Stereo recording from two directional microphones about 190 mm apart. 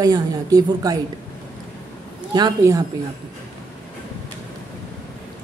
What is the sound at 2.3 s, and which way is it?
Speech, 20° right (ahead or behind).